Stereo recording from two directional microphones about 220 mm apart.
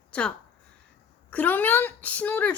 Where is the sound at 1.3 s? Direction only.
5° left (ahead or behind).